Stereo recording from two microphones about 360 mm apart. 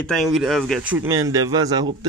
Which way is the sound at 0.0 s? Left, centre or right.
Centre.